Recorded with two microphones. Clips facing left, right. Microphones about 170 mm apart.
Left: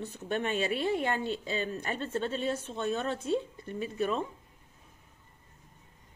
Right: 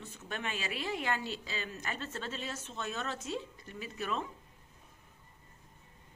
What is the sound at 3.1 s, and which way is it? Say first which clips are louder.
Speech: left 8 dB; 55° left (ahead or behind).